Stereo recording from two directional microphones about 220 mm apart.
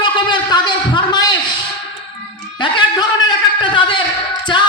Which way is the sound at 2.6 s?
20° left (ahead or behind).